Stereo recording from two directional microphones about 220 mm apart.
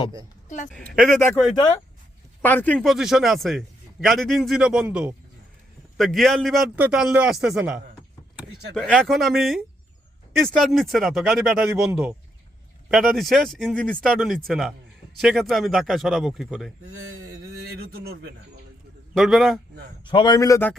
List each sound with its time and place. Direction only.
0.4 s speech: 35° left (ahead or behind)
0.7 s a man's voice: centre (ahead or behind)
17.9 s speech: 45° right (ahead or behind)
19.1 s a man's voice: centre (ahead or behind)
20.1 s a man's voice: 20° left (ahead or behind)